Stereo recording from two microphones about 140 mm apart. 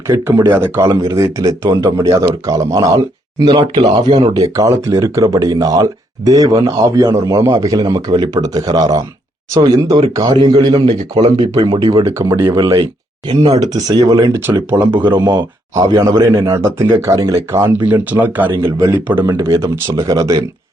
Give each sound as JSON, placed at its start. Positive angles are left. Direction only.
{"t": 0.1, "sound": "a man's voice", "side_deg": -20}
{"t": 12.0, "sound": "a man's voice", "side_deg": -25}
{"t": 14.9, "sound": "speech", "side_deg": -35}